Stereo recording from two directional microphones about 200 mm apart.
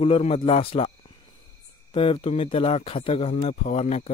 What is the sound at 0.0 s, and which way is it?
Speech, 30° left (ahead or behind).